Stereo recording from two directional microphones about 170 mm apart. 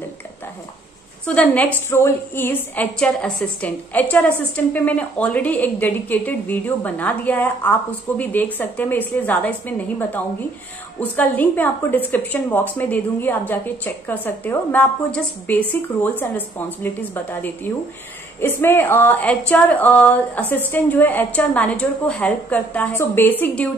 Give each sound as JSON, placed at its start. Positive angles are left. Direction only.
{"t": 1.2, "sound": "a woman's voice", "side_deg": 5}